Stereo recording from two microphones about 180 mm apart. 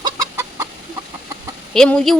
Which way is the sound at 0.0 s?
20° right (ahead or behind).